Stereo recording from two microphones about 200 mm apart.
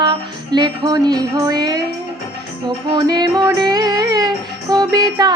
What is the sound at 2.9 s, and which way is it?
Music, 20° right (ahead or behind).